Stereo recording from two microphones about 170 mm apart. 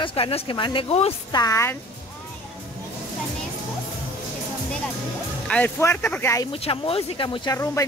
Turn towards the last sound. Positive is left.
turn(degrees=30)  # may be behind; listen again after turning